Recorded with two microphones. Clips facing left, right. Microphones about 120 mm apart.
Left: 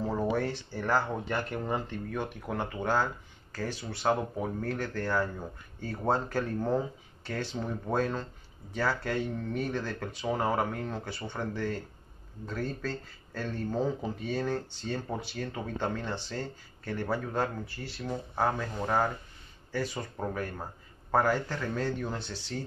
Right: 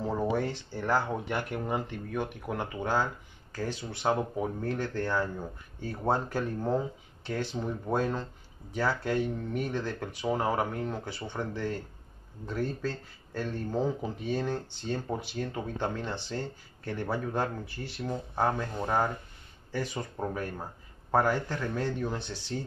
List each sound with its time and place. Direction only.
0.0 s speech: 15° right (ahead or behind)
19.7 s speech: 15° right (ahead or behind)
21.1 s speech: 15° right (ahead or behind)